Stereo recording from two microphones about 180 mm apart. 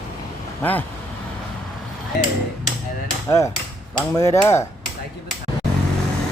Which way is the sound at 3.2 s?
15° left (ahead or behind).